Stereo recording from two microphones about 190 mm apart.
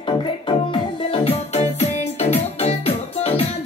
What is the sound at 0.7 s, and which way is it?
Music, 30° left (ahead or behind).